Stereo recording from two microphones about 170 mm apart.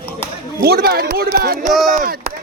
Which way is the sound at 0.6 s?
65° right (ahead or behind).